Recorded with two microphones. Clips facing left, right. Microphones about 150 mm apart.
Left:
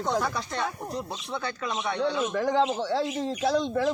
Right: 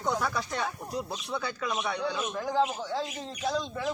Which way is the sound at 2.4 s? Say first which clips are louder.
Left 3 dB; 75° left (ahead or behind).